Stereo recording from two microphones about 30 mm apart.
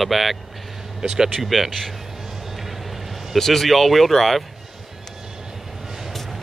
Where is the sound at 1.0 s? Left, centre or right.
Right.